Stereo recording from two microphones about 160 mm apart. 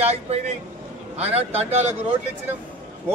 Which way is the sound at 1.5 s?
40° right (ahead or behind).